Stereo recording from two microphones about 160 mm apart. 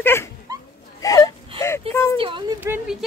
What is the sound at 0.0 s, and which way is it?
Dog, 15° left (ahead or behind).